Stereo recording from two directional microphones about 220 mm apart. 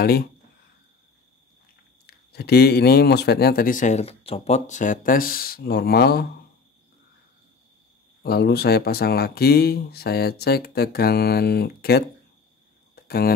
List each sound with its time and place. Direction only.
0.0 s speech: 45° left (ahead or behind)
2.0 s speech: 45° left (ahead or behind)
8.2 s speech: 45° left (ahead or behind)
12.9 s a sound: 45° left (ahead or behind)